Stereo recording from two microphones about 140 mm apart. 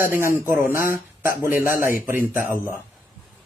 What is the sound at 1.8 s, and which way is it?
Speech, 80° left.